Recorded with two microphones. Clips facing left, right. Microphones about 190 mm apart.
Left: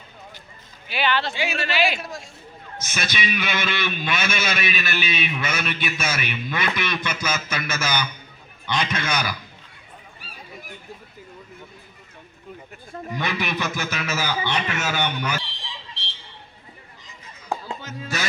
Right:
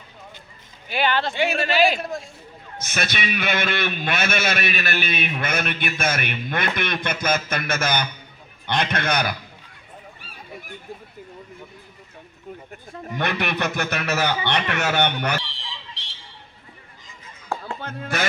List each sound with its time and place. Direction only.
0.9 s speech: 45° right (ahead or behind)
2.9 s a man's voice: 60° right (ahead or behind)
13.1 s a man's voice: 60° right (ahead or behind)
17.7 s speech: 55° right (ahead or behind)